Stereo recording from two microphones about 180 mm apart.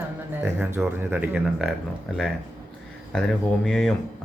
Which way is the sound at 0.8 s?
10° right (ahead or behind).